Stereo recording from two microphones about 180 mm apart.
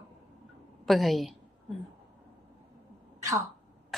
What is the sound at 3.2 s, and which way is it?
Speech, 20° right (ahead or behind).